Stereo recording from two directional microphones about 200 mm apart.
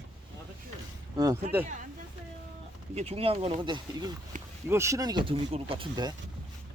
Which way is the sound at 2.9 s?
30° right (ahead or behind).